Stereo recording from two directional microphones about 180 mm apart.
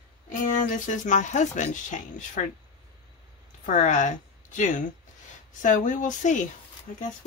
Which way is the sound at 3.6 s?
45° left (ahead or behind).